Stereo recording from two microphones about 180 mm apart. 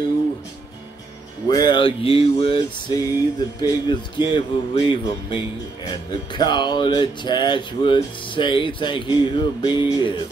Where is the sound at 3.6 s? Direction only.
25° left (ahead or behind).